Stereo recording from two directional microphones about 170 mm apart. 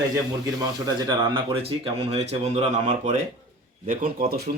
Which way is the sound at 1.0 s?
30° right (ahead or behind).